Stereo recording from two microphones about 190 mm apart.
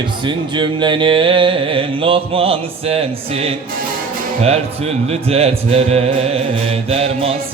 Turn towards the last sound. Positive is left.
turn(degrees=-30)  # may be behind; listen again after turning